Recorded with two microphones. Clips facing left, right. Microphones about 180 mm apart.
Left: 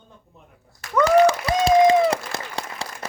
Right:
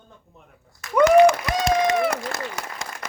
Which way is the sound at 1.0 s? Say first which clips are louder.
Right 2 dB; 35° left (ahead or behind).